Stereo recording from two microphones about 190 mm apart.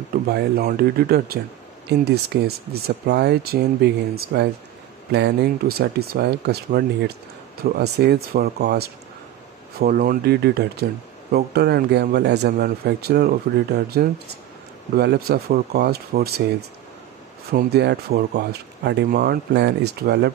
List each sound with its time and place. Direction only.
0.1 s speech: 55° right (ahead or behind)
17.5 s speech: 60° right (ahead or behind)